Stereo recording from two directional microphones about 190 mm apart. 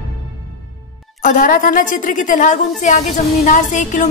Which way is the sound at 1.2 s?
45° left (ahead or behind).